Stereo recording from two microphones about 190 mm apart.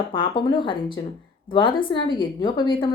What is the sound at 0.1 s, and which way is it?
A woman's voice, 25° left (ahead or behind).